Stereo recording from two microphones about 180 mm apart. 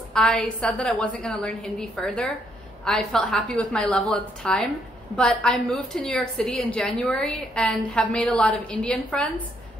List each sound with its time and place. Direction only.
0.1 s a woman's voice: 5° left (ahead or behind)